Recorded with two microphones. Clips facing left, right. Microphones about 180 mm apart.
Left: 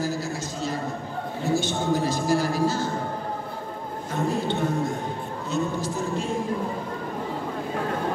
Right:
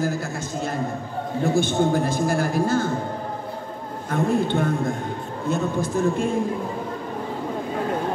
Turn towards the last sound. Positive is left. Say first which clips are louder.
# right 6 dB
turn(degrees=-55)  # may be behind; listen again after turning